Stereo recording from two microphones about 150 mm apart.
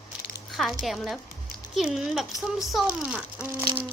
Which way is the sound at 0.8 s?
Centre (ahead or behind).